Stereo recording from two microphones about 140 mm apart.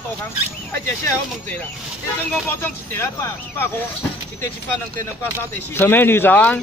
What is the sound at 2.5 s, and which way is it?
Speech, 15° left (ahead or behind).